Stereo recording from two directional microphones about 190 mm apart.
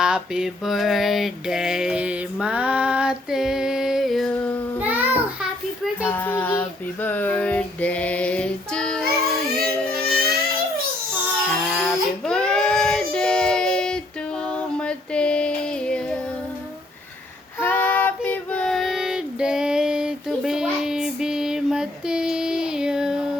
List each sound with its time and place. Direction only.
0.0 s mantra: 5° right (ahead or behind)
4.8 s child singing: 10° right (ahead or behind)
6.1 s child singing: 10° left (ahead or behind)
9.0 s music: 55° right (ahead or behind)
11.6 s child singing: 5° left (ahead or behind)
17.6 s child singing: 10° left (ahead or behind)